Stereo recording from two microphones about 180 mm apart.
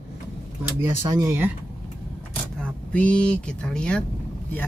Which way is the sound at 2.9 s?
5° left (ahead or behind).